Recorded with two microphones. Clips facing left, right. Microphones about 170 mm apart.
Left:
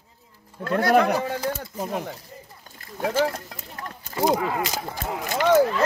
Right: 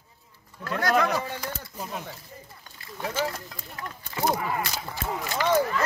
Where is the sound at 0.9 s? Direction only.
60° left (ahead or behind).